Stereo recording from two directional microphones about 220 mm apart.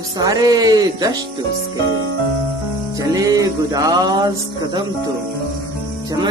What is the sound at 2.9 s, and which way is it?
Music, 15° right (ahead or behind).